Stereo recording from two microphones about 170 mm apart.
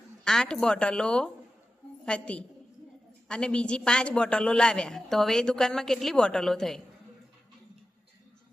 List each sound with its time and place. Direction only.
0.3 s a man's voice: 5° left (ahead or behind)